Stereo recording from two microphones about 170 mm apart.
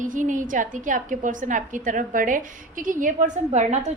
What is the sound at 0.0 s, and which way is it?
A woman's voice, 50° right (ahead or behind).